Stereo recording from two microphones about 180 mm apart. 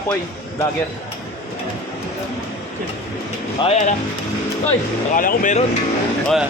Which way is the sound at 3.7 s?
40° left (ahead or behind).